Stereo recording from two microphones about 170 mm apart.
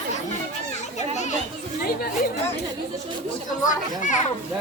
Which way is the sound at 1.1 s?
45° left (ahead or behind).